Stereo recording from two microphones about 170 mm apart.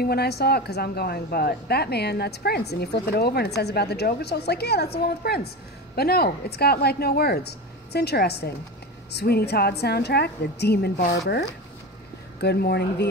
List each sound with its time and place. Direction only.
0.0 s a woman's voice: 70° left (ahead or behind)